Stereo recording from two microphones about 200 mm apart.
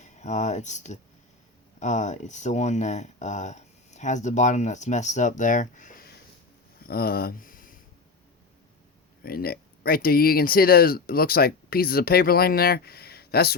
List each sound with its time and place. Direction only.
0.0 s speech: 35° left (ahead or behind)
9.2 s speech: 50° left (ahead or behind)